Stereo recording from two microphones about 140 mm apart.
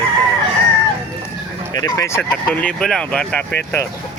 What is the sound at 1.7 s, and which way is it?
Speech, 25° left (ahead or behind).